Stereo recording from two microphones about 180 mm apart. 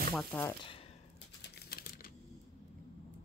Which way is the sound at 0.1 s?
5° left (ahead or behind).